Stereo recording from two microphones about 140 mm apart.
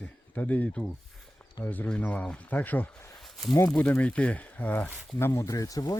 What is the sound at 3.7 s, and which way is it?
Speech, 10° left (ahead or behind).